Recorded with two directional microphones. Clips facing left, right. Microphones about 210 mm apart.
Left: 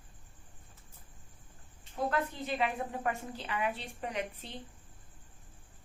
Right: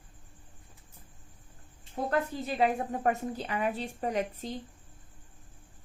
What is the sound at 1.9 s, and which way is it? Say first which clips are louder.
A woman's voice: right 3 dB; 40° right (ahead or behind).